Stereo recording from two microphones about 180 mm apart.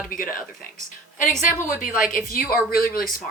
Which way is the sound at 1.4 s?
50° left (ahead or behind).